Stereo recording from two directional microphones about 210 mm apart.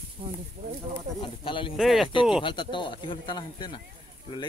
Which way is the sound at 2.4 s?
25° left (ahead or behind).